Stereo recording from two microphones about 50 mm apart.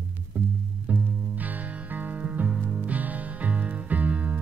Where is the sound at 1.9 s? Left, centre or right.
Right.